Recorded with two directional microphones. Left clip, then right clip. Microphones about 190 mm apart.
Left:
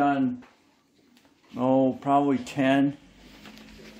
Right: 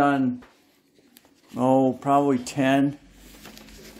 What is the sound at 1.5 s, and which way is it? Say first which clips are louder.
Speech: right 3 dB; 25° right (ahead or behind).